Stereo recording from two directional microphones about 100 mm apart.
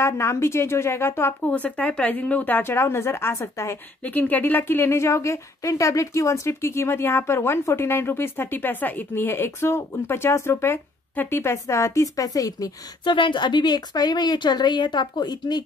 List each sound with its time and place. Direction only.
0.0 s a woman's voice: 25° left (ahead or behind)
4.0 s a woman's voice: 15° left (ahead or behind); by 12.7 s 35° left (ahead or behind)
13.0 s speech: 55° left (ahead or behind)